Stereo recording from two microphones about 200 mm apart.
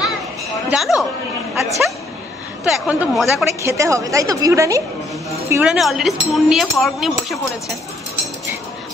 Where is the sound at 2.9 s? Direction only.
Centre (ahead or behind).